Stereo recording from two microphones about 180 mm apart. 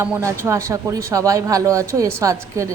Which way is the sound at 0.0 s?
15° right (ahead or behind).